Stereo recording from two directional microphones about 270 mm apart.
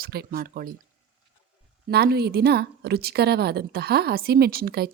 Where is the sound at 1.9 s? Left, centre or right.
Right.